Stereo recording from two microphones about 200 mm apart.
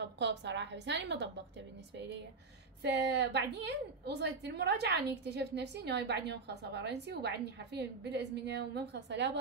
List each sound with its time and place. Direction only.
0.0 s a woman's voice: 60° right (ahead or behind)
2.8 s a woman's voice: 60° right (ahead or behind)